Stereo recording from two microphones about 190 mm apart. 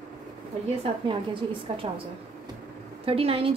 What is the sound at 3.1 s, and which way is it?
Speech, 30° right (ahead or behind).